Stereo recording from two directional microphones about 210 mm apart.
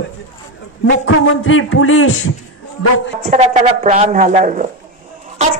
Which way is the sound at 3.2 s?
35° right (ahead or behind).